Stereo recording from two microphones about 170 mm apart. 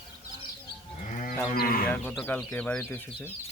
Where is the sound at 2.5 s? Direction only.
10° left (ahead or behind).